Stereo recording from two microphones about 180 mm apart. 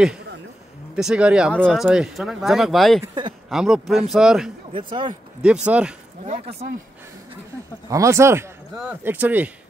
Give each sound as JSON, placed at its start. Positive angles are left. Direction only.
{"t": 0.9, "sound": "speech", "side_deg": -5}
{"t": 4.7, "sound": "speech", "side_deg": -25}
{"t": 5.7, "sound": "speech", "side_deg": -5}
{"t": 6.2, "sound": "speech", "side_deg": -35}
{"t": 7.9, "sound": "speech", "side_deg": -15}